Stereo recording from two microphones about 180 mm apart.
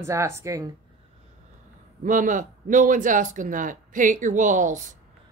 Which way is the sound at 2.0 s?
45° right (ahead or behind).